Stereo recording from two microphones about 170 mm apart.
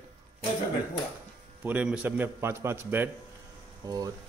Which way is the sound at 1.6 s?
10° right (ahead or behind).